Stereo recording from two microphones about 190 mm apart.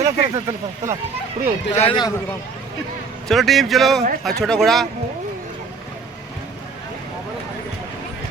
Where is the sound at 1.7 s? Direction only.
30° left (ahead or behind).